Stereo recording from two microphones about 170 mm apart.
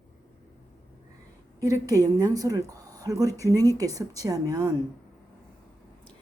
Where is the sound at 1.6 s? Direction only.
20° right (ahead or behind).